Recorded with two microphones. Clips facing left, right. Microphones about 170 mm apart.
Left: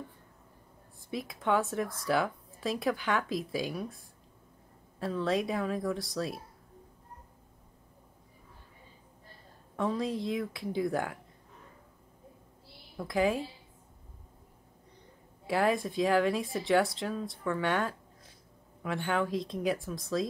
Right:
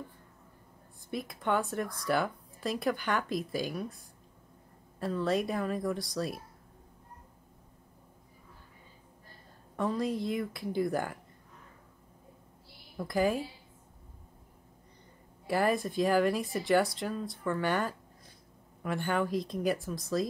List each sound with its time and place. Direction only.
1.1 s speech: centre (ahead or behind)
9.8 s speech: centre (ahead or behind)
12.9 s a woman's voice: centre (ahead or behind)
15.4 s speech: centre (ahead or behind)